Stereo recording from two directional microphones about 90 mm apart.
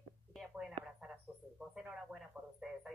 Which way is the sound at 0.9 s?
10° right (ahead or behind).